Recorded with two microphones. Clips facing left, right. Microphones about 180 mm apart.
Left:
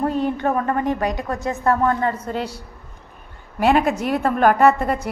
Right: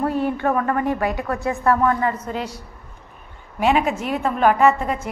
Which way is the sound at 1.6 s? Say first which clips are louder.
Even; 35° left (ahead or behind).